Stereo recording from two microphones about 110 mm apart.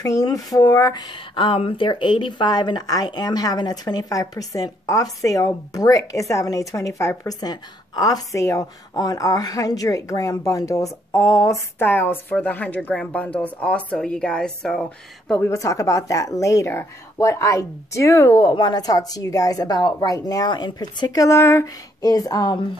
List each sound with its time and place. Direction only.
0.0 s speech: 35° left (ahead or behind)
1.3 s speech: 55° left (ahead or behind); by 15.4 s 5° left (ahead or behind)
15.4 s speech: 30° left (ahead or behind)
18.5 s speech: 40° left (ahead or behind)